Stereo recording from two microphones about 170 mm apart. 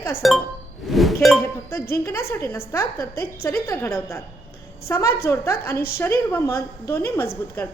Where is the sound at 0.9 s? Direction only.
Centre (ahead or behind).